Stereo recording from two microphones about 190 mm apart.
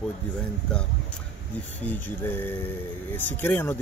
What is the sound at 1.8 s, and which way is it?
Speech, 10° left (ahead or behind).